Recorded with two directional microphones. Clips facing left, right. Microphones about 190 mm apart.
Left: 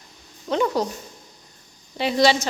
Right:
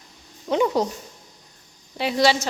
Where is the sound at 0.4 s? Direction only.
15° right (ahead or behind).